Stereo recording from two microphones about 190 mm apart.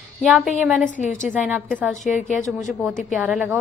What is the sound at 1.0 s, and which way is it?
Speech, 40° left (ahead or behind).